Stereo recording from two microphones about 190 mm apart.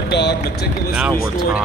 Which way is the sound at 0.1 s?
60° left (ahead or behind).